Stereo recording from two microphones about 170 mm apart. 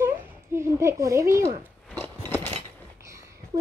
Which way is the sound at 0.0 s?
15° right (ahead or behind).